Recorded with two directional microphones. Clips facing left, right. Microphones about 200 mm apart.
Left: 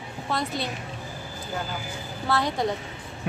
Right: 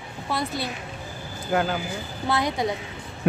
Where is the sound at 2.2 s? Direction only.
15° right (ahead or behind).